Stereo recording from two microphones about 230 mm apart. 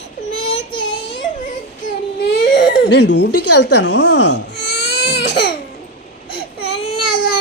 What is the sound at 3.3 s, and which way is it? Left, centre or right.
Speech, left.